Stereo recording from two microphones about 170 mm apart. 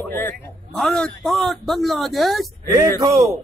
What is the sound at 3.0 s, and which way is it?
Speech, 20° right (ahead or behind).